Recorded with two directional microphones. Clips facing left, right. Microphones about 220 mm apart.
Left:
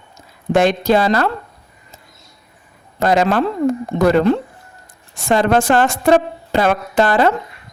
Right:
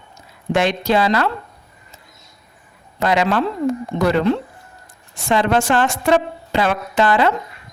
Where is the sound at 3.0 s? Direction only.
45° left (ahead or behind).